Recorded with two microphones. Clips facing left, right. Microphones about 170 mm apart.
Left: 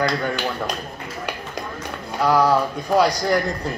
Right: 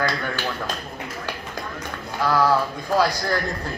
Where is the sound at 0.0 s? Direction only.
15° left (ahead or behind).